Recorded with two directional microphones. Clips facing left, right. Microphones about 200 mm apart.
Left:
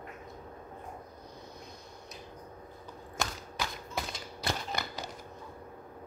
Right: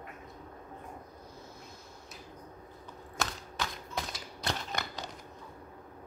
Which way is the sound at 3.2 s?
5° left (ahead or behind).